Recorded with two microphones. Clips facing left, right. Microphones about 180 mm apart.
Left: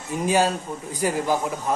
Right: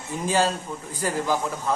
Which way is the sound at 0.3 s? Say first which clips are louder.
Left 2 dB; 15° left (ahead or behind).